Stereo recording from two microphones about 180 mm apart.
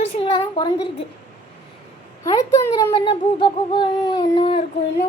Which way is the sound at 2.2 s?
20° left (ahead or behind).